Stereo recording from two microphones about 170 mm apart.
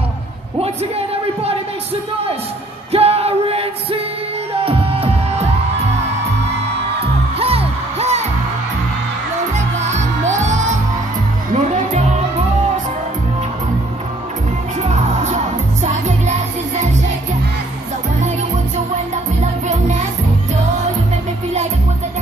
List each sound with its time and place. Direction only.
0.6 s speech: 35° right (ahead or behind)
2.9 s music: 35° right (ahead or behind)
7.0 s music: 35° right (ahead or behind)
9.8 s music: 45° right (ahead or behind)
14.8 s music: 40° right (ahead or behind)
19.4 s music: 40° right (ahead or behind)